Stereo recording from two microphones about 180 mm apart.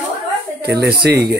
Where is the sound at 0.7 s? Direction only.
65° right (ahead or behind).